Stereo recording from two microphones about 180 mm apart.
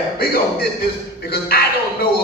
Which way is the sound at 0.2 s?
60° left (ahead or behind).